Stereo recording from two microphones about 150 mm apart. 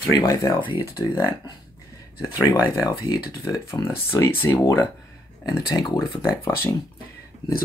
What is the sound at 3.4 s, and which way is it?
Speech, 20° left (ahead or behind).